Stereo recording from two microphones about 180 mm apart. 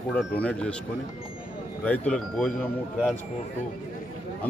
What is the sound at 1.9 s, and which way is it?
Speech, 5° left (ahead or behind).